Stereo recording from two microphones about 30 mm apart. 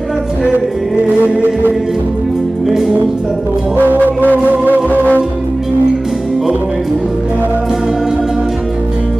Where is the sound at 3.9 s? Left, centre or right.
Right.